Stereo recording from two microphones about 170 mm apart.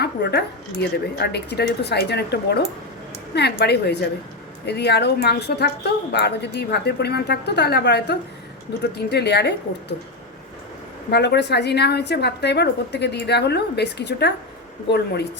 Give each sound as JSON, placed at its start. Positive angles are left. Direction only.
{"t": 0.0, "sound": "speech", "side_deg": 75}
{"t": 3.6, "sound": "a woman's voice", "side_deg": 80}
{"t": 11.1, "sound": "a woman's voice", "side_deg": 80}